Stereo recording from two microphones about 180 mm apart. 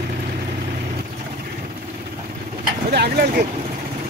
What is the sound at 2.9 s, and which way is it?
Vehicle, 65° right (ahead or behind).